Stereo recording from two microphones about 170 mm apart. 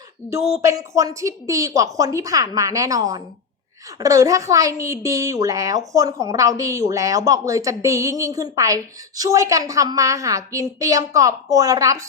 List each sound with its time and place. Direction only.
0.3 s a woman's voice: 15° right (ahead or behind)